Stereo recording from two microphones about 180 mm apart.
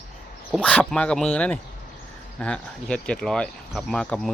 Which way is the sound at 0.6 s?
5° left (ahead or behind).